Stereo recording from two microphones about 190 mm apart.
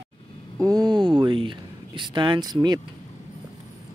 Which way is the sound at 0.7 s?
20° right (ahead or behind).